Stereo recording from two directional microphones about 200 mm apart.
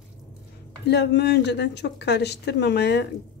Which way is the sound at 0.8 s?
55° left (ahead or behind).